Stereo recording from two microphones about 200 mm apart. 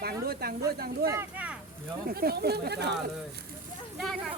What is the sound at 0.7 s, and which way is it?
Speech, 50° right (ahead or behind).